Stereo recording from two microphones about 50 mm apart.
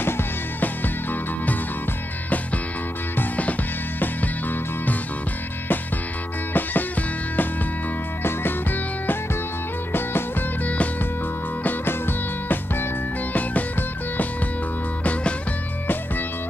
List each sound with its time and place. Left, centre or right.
0.0 s music: left
4.0 s music: left
6.5 s music: left
8.2 s music: left
11.6 s music: left
13.3 s music: left